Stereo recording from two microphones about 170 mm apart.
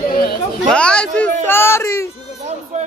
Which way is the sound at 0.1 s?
65° left (ahead or behind).